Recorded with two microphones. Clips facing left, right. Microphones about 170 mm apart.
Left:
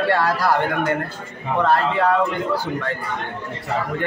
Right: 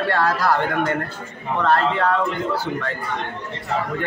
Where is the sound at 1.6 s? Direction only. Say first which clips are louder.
Left 1 dB; 10° left (ahead or behind).